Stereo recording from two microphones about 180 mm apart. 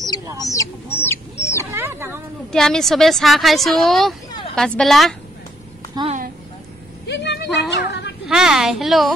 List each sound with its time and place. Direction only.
0.4 s speech: 20° left (ahead or behind)
1.7 s speech: 10° right (ahead or behind)
2.5 s a woman's voice: 5° left (ahead or behind)
4.3 s a sound: 30° left (ahead or behind)
4.6 s a woman's voice: 5° left (ahead or behind)
7.1 s a sound: 75° left (ahead or behind)
8.3 s a woman's voice: 5° right (ahead or behind)